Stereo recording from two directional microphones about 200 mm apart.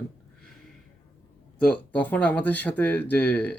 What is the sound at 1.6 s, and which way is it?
Speech, 5° left (ahead or behind).